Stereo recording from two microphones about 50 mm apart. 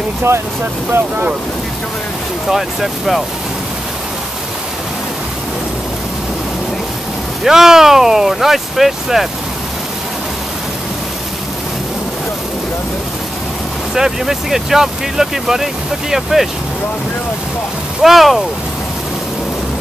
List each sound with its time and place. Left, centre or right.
0.3 s speech: right
2.5 s speech: centre
7.4 s speech: centre
13.9 s speech: centre
18.0 s speech: centre